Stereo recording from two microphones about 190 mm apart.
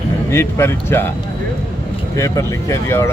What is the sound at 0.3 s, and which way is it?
Speech, 15° left (ahead or behind).